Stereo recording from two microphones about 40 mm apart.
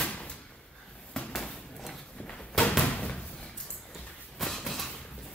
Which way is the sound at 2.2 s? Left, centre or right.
Centre.